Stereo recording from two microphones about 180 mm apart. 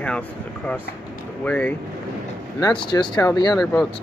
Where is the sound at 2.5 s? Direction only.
25° left (ahead or behind).